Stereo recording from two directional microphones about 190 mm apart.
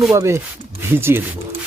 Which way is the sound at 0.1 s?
15° right (ahead or behind).